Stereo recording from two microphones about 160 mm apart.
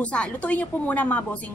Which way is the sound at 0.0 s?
10° left (ahead or behind).